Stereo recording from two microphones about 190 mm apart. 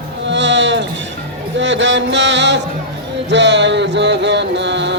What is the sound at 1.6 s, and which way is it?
Mantra, 70° right (ahead or behind).